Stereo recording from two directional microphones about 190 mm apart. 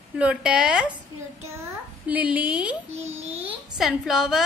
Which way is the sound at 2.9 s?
35° right (ahead or behind).